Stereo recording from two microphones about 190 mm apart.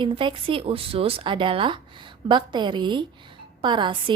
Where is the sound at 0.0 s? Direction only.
25° right (ahead or behind).